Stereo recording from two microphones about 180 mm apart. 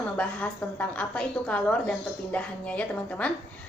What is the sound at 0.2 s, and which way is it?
A woman's voice, 5° left (ahead or behind).